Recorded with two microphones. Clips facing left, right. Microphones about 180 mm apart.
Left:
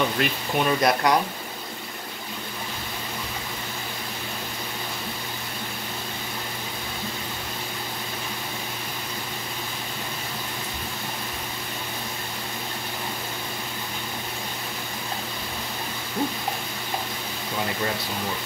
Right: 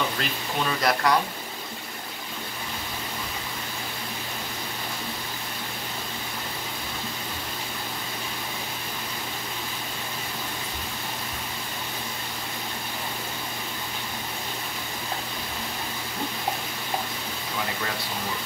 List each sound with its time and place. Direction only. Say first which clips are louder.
0.2 s speech: left 5 dB; 20° left (ahead or behind)